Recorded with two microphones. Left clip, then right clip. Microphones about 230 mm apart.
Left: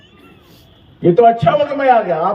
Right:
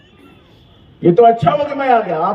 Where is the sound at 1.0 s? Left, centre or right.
Right.